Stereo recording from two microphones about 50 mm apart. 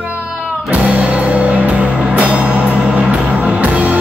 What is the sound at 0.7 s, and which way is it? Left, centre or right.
Music, right.